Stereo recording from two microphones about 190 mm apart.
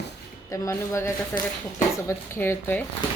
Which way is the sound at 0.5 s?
15° left (ahead or behind).